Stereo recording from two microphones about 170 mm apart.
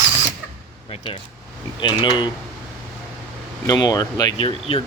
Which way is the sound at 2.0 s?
25° left (ahead or behind).